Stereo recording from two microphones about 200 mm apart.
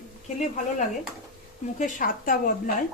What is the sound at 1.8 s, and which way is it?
Speech, 45° left (ahead or behind).